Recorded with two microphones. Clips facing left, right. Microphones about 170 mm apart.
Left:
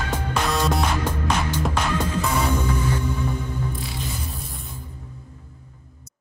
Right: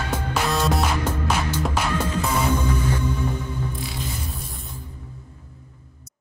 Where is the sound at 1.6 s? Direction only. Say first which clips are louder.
Left 1 dB; centre (ahead or behind).